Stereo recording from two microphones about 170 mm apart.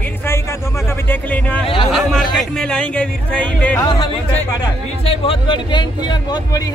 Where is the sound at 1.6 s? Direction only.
30° left (ahead or behind).